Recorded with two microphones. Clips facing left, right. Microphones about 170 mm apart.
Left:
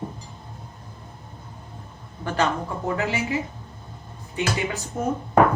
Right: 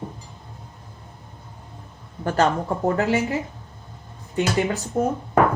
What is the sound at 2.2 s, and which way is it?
A woman's voice, 40° right (ahead or behind).